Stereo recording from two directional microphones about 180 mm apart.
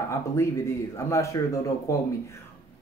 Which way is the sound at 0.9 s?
15° left (ahead or behind).